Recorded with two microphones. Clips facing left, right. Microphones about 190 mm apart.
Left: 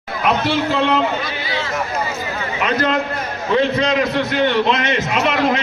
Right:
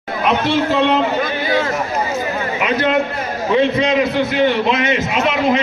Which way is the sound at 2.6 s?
5° right (ahead or behind).